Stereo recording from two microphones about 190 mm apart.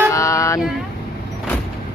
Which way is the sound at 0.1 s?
15° left (ahead or behind).